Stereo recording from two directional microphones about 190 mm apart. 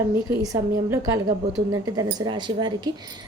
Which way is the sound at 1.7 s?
20° right (ahead or behind).